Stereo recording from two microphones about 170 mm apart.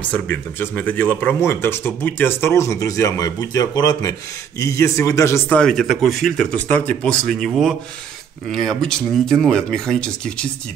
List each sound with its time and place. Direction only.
0.1 s speech: 10° left (ahead or behind)
5.6 s speech: 5° left (ahead or behind)